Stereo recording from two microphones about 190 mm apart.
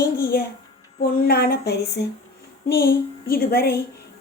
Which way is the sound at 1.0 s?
50° left (ahead or behind).